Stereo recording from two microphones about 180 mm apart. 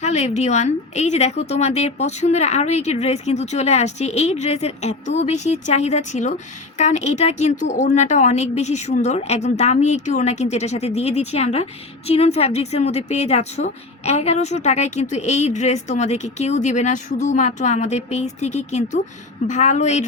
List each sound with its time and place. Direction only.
0.0 s speech: 40° left (ahead or behind)